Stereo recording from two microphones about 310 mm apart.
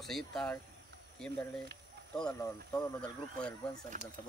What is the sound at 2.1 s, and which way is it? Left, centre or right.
Speech, centre.